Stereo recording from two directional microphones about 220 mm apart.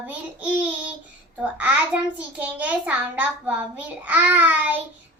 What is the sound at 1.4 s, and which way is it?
A child's voice, 5° right (ahead or behind).